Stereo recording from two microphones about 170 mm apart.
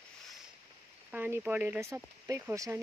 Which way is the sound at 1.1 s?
10° right (ahead or behind).